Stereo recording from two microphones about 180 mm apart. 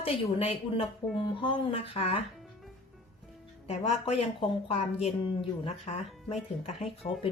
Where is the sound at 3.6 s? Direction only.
35° left (ahead or behind).